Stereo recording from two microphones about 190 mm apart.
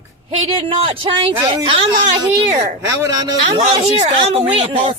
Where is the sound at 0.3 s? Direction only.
30° right (ahead or behind).